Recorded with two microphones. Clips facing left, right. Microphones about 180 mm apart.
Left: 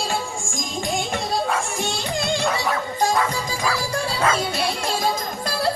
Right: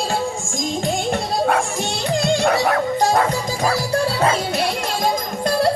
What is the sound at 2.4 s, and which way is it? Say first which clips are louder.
Music: right 6 dB; 60° right (ahead or behind).